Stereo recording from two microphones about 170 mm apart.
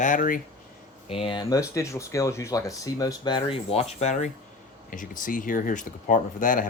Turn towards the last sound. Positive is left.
turn(degrees=50)  # may be behind; listen again after turning